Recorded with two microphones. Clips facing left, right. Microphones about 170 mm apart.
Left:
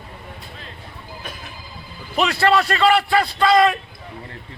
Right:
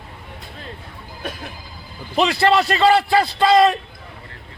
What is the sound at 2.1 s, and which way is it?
A man's voice, 25° right (ahead or behind).